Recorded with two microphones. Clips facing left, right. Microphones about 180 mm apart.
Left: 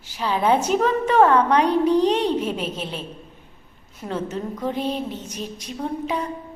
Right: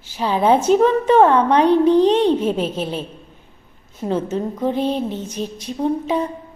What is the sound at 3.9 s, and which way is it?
Speech, 30° right (ahead or behind).